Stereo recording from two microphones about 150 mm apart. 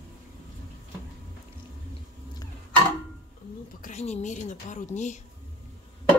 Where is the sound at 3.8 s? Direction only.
50° left (ahead or behind).